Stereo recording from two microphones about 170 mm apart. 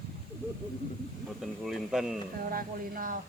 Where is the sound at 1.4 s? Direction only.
Centre (ahead or behind).